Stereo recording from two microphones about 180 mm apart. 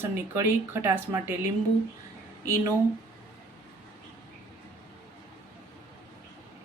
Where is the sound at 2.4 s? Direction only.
20° right (ahead or behind).